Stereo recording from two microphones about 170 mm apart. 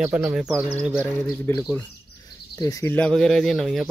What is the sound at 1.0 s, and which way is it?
Speech, 5° left (ahead or behind).